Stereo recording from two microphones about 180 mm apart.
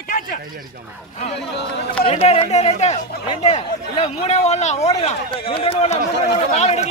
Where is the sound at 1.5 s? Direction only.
70° left (ahead or behind).